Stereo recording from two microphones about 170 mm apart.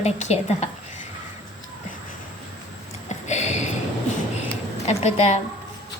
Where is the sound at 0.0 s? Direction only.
40° left (ahead or behind).